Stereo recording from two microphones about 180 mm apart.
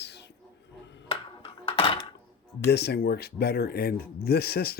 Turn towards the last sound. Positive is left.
turn(degrees=60)  # may be behind; listen again after turning